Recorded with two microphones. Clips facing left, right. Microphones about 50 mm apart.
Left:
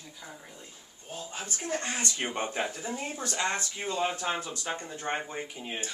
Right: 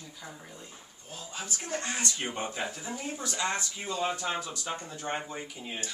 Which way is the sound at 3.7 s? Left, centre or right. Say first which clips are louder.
Left 1 dB; left.